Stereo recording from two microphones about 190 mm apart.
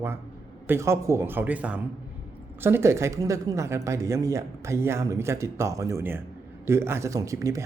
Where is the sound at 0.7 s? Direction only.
15° right (ahead or behind).